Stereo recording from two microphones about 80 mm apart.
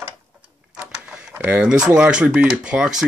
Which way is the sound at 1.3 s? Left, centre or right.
Right.